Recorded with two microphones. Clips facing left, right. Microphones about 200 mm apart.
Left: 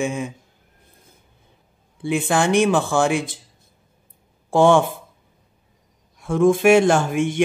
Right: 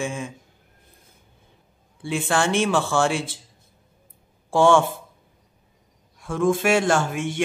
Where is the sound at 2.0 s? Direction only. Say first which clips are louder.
Left 3 dB; 20° left (ahead or behind).